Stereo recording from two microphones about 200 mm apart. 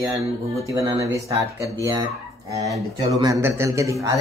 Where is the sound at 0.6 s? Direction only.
15° right (ahead or behind).